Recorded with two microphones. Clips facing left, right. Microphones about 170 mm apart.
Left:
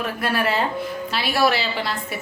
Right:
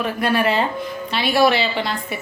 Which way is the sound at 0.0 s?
Centre (ahead or behind).